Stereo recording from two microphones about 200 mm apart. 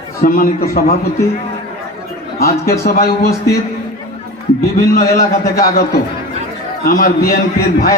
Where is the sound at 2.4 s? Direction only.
50° left (ahead or behind).